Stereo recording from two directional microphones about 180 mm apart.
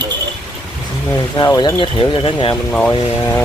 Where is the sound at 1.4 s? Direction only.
20° left (ahead or behind).